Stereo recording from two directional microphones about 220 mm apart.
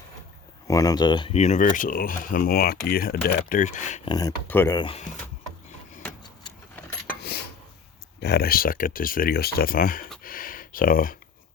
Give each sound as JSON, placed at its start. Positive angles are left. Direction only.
{"t": 0.7, "sound": "speech", "side_deg": 15}
{"t": 4.1, "sound": "speech", "side_deg": 10}
{"t": 7.2, "sound": "dishes", "side_deg": 45}
{"t": 8.2, "sound": "speech", "side_deg": 45}
{"t": 10.2, "sound": "a sound", "side_deg": 40}